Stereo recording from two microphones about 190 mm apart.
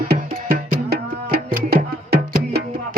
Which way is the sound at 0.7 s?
55° right (ahead or behind).